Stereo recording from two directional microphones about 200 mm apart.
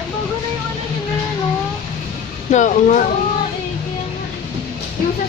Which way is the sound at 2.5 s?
40° left (ahead or behind).